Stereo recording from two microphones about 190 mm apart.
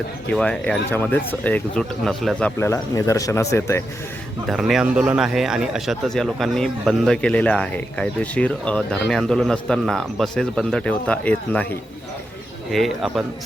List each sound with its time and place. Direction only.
0.3 s speech: 5° left (ahead or behind)
2.4 s speech: 15° left (ahead or behind)
4.4 s a man's voice: centre (ahead or behind)